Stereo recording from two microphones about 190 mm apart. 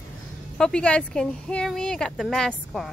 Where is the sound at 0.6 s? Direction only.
5° left (ahead or behind).